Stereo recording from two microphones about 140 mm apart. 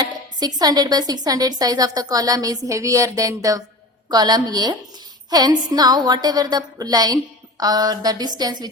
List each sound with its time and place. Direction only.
0.0 s a woman's voice: 30° right (ahead or behind)